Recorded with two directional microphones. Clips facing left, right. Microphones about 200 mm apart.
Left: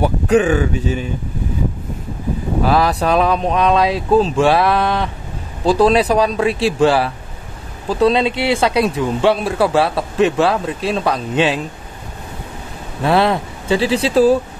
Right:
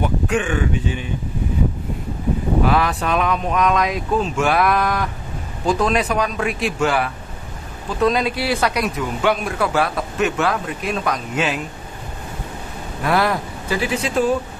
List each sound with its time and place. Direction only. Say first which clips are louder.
0.0 s speech: left 7 dB; 35° left (ahead or behind)
2.6 s speech: left 6 dB; 35° left (ahead or behind)
13.0 s speech: left 4 dB; 25° left (ahead or behind)